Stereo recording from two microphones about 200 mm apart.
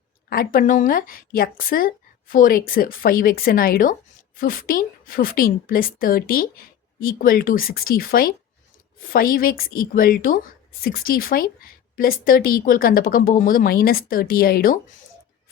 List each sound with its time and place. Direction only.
0.3 s a woman's voice: 45° left (ahead or behind)